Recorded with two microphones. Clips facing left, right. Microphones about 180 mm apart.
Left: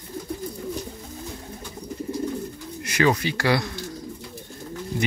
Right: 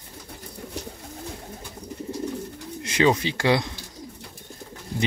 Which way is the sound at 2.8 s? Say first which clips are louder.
Right 1 dB; 25° right (ahead or behind).